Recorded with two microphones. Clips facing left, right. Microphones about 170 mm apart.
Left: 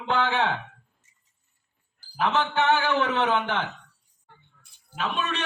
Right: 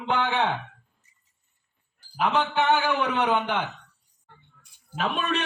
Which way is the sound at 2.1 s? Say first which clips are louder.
Even; 15° right (ahead or behind).